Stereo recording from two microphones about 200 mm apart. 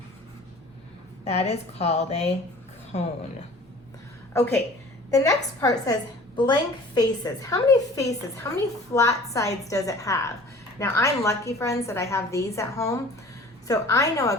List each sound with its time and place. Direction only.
1.2 s a woman's voice: 30° left (ahead or behind)
4.4 s a woman's voice: 10° left (ahead or behind)